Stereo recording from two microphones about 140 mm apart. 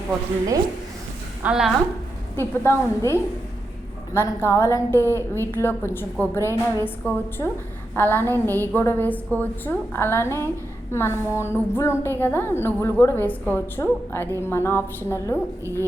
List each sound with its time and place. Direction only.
1.4 s a woman's voice: 5° right (ahead or behind)
2.3 s a woman's voice: 15° left (ahead or behind)
15.6 s speech: 20° right (ahead or behind)